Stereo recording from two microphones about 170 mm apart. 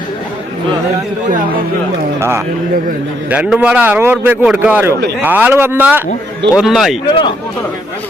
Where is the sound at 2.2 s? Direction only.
15° right (ahead or behind).